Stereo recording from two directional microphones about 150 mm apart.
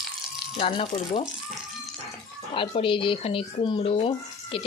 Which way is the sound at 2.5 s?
35° left (ahead or behind).